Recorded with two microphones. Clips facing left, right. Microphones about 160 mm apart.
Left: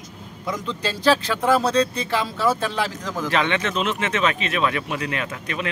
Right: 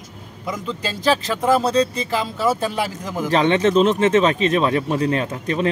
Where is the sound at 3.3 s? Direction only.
35° right (ahead or behind).